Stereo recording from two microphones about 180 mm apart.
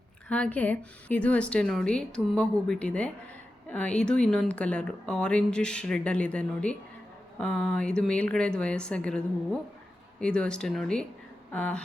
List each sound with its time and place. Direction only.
0.3 s a woman's voice: 5° left (ahead or behind)